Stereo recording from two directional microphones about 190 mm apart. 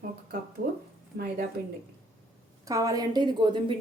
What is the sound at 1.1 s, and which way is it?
Speech, 55° right (ahead or behind).